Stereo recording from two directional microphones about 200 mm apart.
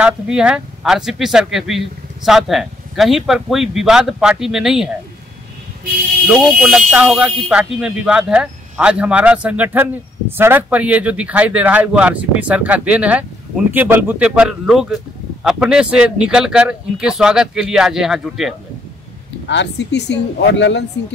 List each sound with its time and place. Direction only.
0.0 s speech: 5° right (ahead or behind)
6.2 s speech: centre (ahead or behind)
19.4 s speech: 60° left (ahead or behind)